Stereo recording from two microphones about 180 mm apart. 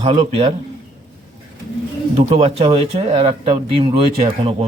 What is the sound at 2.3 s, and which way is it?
A man's voice, 35° right (ahead or behind).